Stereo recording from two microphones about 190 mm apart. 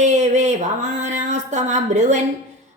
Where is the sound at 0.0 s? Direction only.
35° right (ahead or behind).